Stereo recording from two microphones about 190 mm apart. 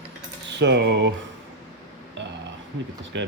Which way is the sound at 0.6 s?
65° right (ahead or behind).